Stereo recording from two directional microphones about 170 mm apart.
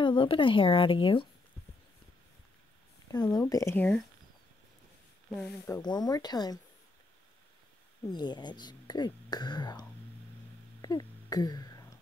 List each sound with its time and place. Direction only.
0.0 s speech: 30° left (ahead or behind)
3.1 s speech: 20° left (ahead or behind)
5.7 s speech: 25° left (ahead or behind)
8.1 s speech: 25° left (ahead or behind)
10.8 s cough: 20° left (ahead or behind)